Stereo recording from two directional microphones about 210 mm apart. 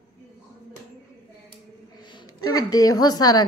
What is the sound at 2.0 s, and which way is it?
A woman's voice, 20° left (ahead or behind).